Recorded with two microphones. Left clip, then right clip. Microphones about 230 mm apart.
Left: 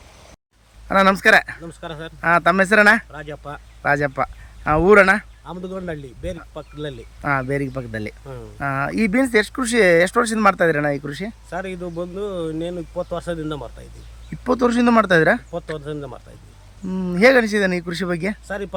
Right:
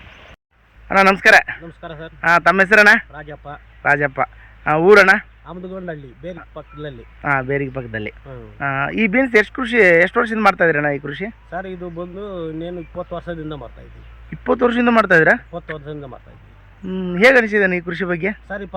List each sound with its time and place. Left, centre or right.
0.9 s speech: centre